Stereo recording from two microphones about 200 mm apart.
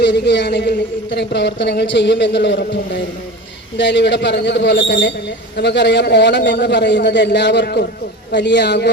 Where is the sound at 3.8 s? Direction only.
65° left (ahead or behind).